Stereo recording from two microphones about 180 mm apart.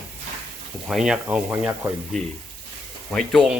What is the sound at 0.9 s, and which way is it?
Speech, 5° right (ahead or behind).